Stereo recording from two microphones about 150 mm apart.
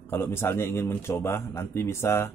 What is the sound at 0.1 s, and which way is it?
A man's voice, 15° left (ahead or behind).